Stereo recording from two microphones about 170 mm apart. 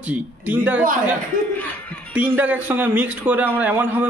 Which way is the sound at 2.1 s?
10° right (ahead or behind).